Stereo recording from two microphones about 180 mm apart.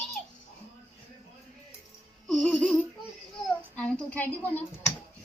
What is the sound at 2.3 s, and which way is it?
Music, 5° left (ahead or behind).